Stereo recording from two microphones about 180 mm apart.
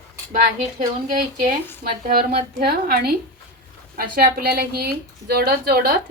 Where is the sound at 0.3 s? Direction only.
45° right (ahead or behind).